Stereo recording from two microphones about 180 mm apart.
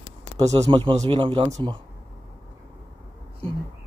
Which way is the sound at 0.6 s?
25° right (ahead or behind).